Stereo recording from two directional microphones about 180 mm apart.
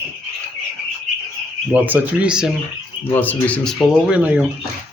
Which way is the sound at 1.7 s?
10° right (ahead or behind).